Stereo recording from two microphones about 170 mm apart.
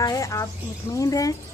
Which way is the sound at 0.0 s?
20° left (ahead or behind).